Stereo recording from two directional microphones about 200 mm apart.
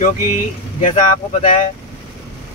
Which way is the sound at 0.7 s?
35° left (ahead or behind).